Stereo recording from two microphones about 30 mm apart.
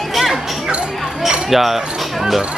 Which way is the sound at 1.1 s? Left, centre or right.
Right.